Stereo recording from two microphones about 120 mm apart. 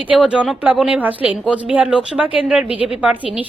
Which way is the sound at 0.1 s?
10° right (ahead or behind).